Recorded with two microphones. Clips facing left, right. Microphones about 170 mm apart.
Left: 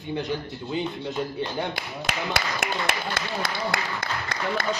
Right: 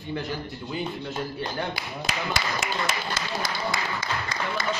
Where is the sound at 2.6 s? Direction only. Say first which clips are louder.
Left 1 dB; 60° left (ahead or behind).